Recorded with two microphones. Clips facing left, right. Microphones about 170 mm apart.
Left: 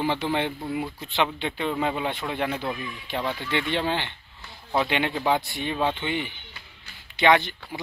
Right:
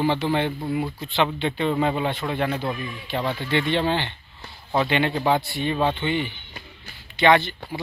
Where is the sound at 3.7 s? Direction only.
10° left (ahead or behind).